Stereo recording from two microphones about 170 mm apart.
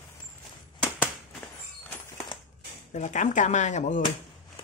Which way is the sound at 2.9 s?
45° left (ahead or behind).